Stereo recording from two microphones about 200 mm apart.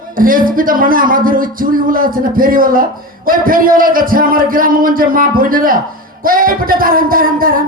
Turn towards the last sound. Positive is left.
turn(degrees=-45)  # may be behind; listen again after turning